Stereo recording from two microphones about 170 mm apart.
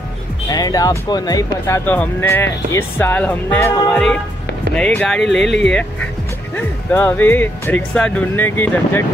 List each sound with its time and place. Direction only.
0.5 s speech: 20° left (ahead or behind)
1.9 s speech: 10° left (ahead or behind)